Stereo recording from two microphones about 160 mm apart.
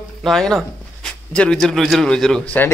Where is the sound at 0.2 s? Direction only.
Centre (ahead or behind).